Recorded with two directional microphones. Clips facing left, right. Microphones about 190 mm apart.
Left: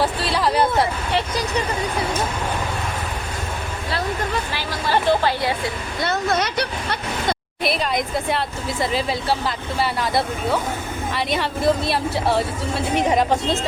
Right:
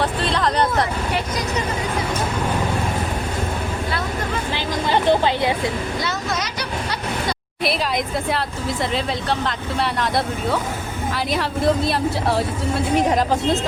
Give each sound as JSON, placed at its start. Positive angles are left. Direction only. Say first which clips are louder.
{"t": 0.0, "sound": "speech", "louder": "even", "side_deg": 5}
{"t": 1.1, "sound": "speech", "louder": "left 1 dB", "side_deg": 35}
{"t": 4.5, "sound": "speech", "louder": "right 3 dB", "side_deg": -20}
{"t": 6.0, "sound": "speech", "louder": "left 4 dB", "side_deg": 55}
{"t": 7.6, "sound": "a woman's voice", "louder": "right 1 dB", "side_deg": 0}